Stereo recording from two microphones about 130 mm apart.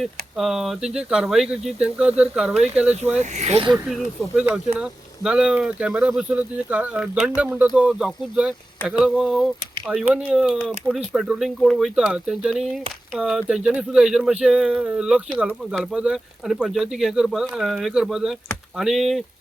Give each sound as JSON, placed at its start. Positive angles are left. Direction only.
{"t": 0.0, "sound": "speech", "side_deg": 0}
{"t": 3.2, "sound": "speech", "side_deg": -60}
{"t": 3.7, "sound": "speech", "side_deg": -5}